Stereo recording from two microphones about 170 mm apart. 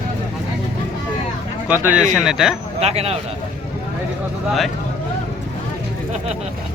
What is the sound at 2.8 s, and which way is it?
Speech, 40° right (ahead or behind).